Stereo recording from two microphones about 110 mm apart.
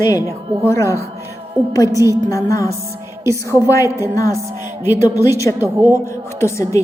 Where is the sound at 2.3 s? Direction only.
30° left (ahead or behind).